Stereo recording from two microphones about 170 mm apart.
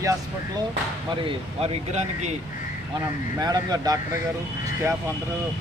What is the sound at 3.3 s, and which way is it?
Speech, 20° right (ahead or behind).